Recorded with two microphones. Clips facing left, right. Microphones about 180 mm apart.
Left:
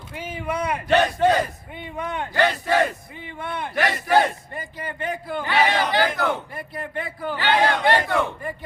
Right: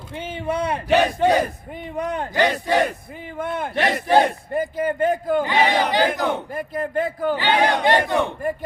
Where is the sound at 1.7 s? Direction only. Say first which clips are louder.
Right 3 dB; 40° right (ahead or behind).